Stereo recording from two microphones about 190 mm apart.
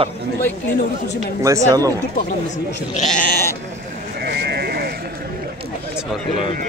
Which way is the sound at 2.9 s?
40° left (ahead or behind).